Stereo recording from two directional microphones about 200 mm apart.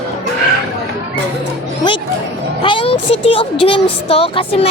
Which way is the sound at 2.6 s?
25° left (ahead or behind).